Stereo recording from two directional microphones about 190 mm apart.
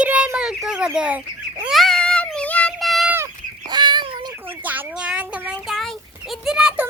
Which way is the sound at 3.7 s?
25° right (ahead or behind).